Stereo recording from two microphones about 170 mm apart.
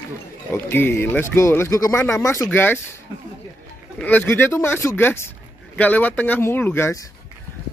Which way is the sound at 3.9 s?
10° left (ahead or behind).